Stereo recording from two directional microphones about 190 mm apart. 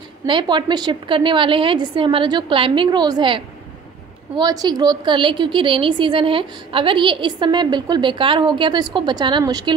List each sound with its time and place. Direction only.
0.3 s a woman's voice: 25° right (ahead or behind)